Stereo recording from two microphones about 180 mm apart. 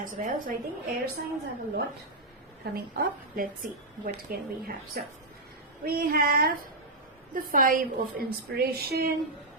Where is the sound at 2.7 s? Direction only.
55° right (ahead or behind).